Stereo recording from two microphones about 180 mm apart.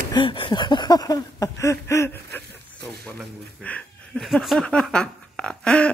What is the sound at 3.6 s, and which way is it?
Speech, 5° left (ahead or behind).